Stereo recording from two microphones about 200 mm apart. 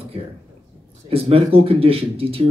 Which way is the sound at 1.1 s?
30° right (ahead or behind).